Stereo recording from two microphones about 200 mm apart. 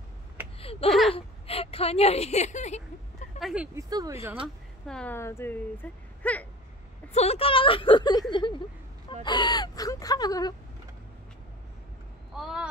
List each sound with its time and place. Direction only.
0.6 s a sound: 30° left (ahead or behind)
0.8 s speech: centre (ahead or behind)
1.1 s a woman's voice: 30° left (ahead or behind)
3.3 s vehicle: centre (ahead or behind)
3.7 s speech: 15° right (ahead or behind)
4.8 s speech: 5° left (ahead or behind)
7.1 s speech: 30° left (ahead or behind)
12.4 s speech: centre (ahead or behind)